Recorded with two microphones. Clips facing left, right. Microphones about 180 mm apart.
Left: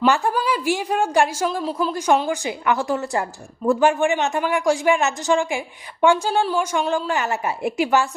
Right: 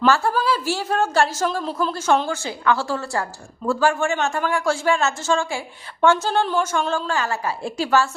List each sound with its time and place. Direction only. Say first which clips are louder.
0.0 s a man's voice: even; 15° left (ahead or behind)